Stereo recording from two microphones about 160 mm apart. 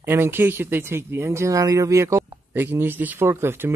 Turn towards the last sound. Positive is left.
turn(degrees=-15)  # may be behind; listen again after turning